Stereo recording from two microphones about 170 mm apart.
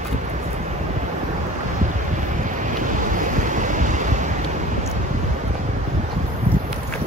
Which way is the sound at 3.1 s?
50° right (ahead or behind).